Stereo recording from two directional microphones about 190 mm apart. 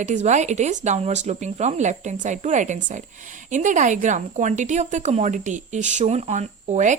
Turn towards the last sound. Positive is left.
turn(degrees=-40)  # may be behind; listen again after turning